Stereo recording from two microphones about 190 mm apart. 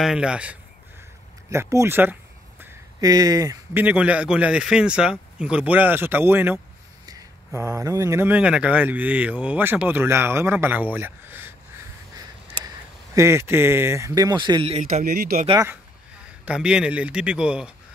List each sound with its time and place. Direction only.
0.0 s a man's voice: 5° right (ahead or behind)
13.1 s speech: 15° right (ahead or behind); by 14.9 s 30° right (ahead or behind)
14.9 s speech: 50° right (ahead or behind)
15.4 s speech: 20° right (ahead or behind)
16.4 s a man's voice: 5° right (ahead or behind)